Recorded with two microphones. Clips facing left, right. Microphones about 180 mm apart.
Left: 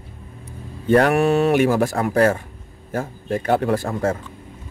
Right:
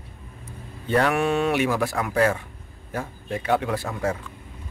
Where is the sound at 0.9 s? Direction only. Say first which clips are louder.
Left 6 dB; 40° left (ahead or behind).